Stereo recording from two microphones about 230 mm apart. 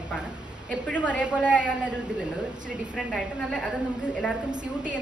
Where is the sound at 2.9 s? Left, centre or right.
Centre.